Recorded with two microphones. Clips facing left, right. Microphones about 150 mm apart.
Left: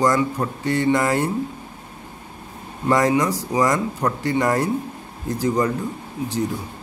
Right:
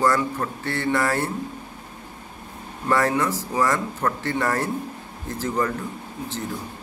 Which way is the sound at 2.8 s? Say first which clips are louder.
Left 3 dB; 15° left (ahead or behind).